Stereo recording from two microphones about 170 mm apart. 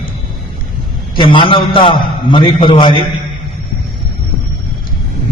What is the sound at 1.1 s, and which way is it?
A man's voice, 30° left (ahead or behind).